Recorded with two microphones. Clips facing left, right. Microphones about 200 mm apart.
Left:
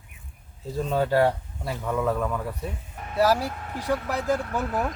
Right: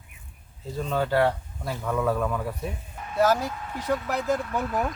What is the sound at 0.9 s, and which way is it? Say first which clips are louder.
Speech: left 2 dB; 35° left (ahead or behind).